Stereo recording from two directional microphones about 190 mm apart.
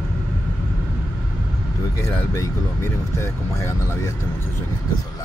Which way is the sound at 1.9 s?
15° left (ahead or behind).